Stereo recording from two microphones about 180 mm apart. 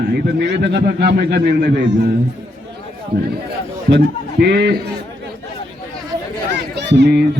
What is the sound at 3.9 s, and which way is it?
Speech, 65° right (ahead or behind).